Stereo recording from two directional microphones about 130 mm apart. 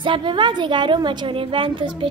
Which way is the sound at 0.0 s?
40° right (ahead or behind).